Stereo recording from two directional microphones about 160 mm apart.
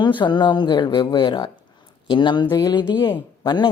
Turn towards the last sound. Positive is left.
turn(degrees=25)  # may be behind; listen again after turning